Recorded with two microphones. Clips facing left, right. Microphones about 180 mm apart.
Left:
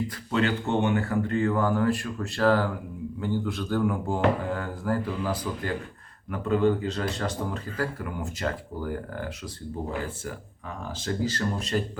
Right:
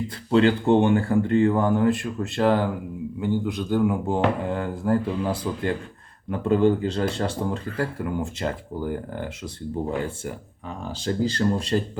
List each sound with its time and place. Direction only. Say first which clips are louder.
0.3 s speech: right 8 dB; 30° right (ahead or behind)